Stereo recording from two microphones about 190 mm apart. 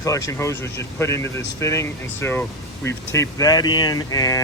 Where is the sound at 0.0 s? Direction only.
15° left (ahead or behind).